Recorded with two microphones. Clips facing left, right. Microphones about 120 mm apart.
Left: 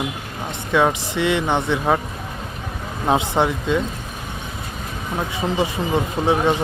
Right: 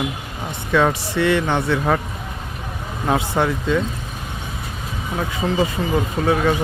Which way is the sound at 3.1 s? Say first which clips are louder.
Left 1 dB; 20° left (ahead or behind).